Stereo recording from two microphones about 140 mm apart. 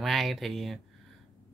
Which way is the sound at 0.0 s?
Centre (ahead or behind).